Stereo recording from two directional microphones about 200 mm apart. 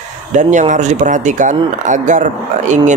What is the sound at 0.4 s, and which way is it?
Speech, 40° right (ahead or behind).